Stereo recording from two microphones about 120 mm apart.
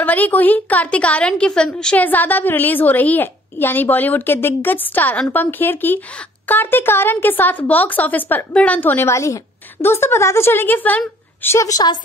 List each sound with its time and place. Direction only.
0.0 s a woman's voice: 15° left (ahead or behind)
11.5 s a woman's voice: 30° left (ahead or behind)